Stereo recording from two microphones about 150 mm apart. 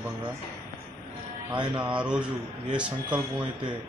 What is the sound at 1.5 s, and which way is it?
Speech, 30° right (ahead or behind).